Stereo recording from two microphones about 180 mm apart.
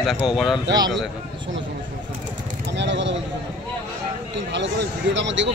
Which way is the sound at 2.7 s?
85° right.